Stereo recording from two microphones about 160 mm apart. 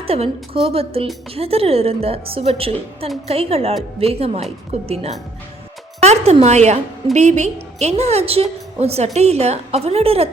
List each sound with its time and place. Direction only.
0.0 s a woman's voice: 40° right (ahead or behind)